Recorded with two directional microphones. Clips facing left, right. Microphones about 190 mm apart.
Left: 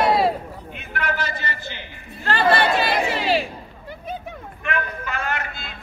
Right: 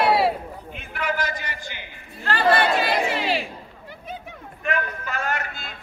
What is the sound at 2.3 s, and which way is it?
Chatter, 25° left (ahead or behind).